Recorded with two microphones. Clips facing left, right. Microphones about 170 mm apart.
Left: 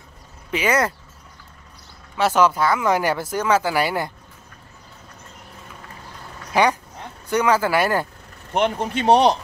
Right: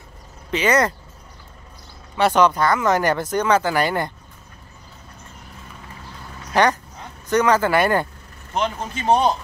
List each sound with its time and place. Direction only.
0.5 s speech: 10° left (ahead or behind)
2.1 s speech: 5° left (ahead or behind)
6.5 s speech: 10° left (ahead or behind)
8.5 s speech: 60° left (ahead or behind); by 9.4 s 75° left (ahead or behind)